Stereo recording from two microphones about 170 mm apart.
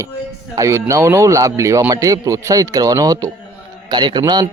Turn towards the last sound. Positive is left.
turn(degrees=-25)  # may be behind; listen again after turning